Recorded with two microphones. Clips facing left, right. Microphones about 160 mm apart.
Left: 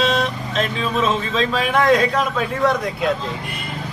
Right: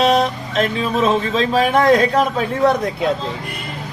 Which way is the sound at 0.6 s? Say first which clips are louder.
Right 3 dB; 40° right (ahead or behind).